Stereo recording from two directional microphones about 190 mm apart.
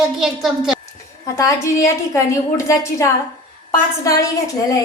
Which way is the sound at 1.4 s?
15° left (ahead or behind).